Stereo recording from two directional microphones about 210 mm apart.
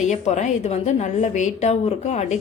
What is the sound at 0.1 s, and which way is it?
A woman's voice, 35° left (ahead or behind).